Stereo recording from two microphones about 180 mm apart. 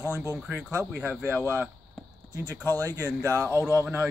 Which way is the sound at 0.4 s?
10° right (ahead or behind).